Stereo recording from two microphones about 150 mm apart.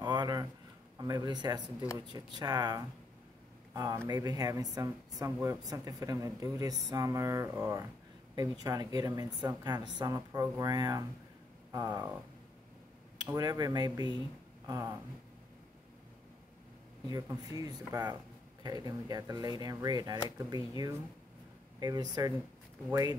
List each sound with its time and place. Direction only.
0.0 s a sound: 25° right (ahead or behind)
0.9 s speech: 25° right (ahead or behind)
13.2 s speech: 25° right (ahead or behind)
17.3 s speech: 25° right (ahead or behind)
21.7 s speech: 25° right (ahead or behind)